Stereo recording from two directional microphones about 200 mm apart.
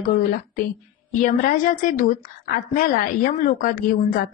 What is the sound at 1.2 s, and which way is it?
A woman's voice, 40° left (ahead or behind).